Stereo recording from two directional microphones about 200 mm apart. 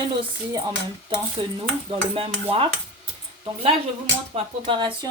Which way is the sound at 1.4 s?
25° right (ahead or behind).